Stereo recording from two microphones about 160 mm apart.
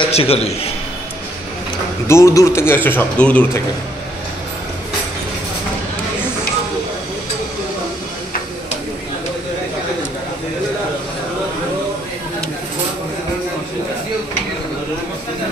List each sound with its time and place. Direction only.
0.1 s a man's voice: 40° left (ahead or behind)
2.0 s a man's voice: 20° left (ahead or behind)